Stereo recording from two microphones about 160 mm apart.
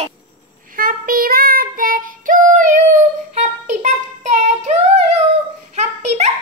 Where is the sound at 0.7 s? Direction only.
55° right (ahead or behind).